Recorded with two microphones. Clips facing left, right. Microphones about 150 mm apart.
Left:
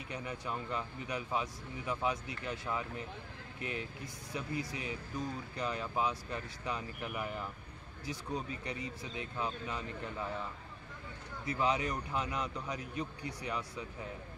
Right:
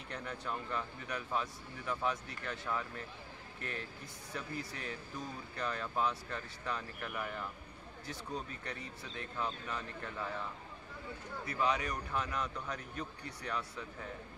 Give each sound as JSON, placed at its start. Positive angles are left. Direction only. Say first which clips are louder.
{"t": 0.1, "sound": "speech", "louder": "left 1 dB", "side_deg": 10}
{"t": 4.3, "sound": "speech", "louder": "left 3 dB", "side_deg": 15}
{"t": 11.4, "sound": "speech", "louder": "left 2 dB", "side_deg": 20}